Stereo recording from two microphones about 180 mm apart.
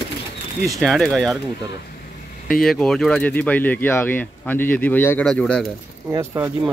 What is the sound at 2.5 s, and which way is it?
Speech, centre (ahead or behind).